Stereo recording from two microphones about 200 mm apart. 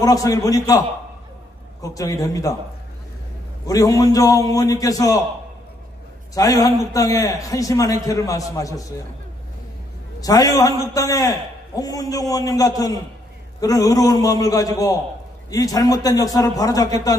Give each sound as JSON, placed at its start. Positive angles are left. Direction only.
{"t": 0.0, "sound": "a man's voice", "side_deg": 15}
{"t": 3.6, "sound": "a man's voice", "side_deg": 15}
{"t": 6.3, "sound": "a man's voice", "side_deg": 20}
{"t": 10.2, "sound": "a man's voice", "side_deg": 20}